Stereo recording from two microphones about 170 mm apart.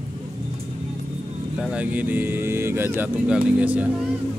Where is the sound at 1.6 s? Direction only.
10° right (ahead or behind).